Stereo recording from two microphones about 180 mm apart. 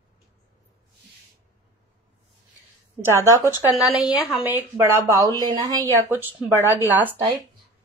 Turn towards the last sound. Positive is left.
turn(degrees=-10)  # may be behind; listen again after turning